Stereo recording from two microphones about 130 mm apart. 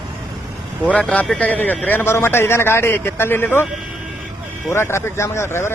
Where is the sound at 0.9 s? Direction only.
10° left (ahead or behind).